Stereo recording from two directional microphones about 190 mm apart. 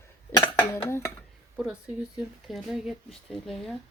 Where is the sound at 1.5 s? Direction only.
5° right (ahead or behind).